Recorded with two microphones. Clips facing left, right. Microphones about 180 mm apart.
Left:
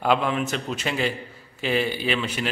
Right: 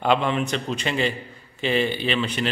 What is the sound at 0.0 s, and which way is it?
A man's voice, 5° left (ahead or behind).